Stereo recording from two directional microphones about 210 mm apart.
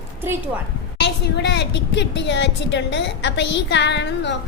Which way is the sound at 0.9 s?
55° left (ahead or behind).